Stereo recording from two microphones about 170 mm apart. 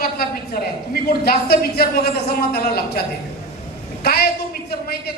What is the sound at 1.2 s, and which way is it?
A man's voice, 65° left (ahead or behind).